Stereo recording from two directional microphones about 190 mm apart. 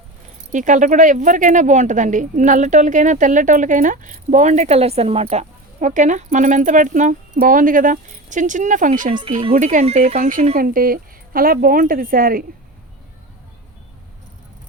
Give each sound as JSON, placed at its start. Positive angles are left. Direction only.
{"t": 0.5, "sound": "speech", "side_deg": -40}
{"t": 9.0, "sound": "speech", "side_deg": -25}
{"t": 10.2, "sound": "speech", "side_deg": -45}